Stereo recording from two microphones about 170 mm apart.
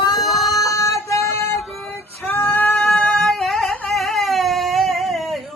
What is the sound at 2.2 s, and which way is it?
Singing, 10° left (ahead or behind).